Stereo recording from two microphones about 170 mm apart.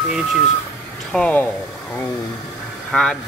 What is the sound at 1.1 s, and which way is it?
Speech, 10° left (ahead or behind).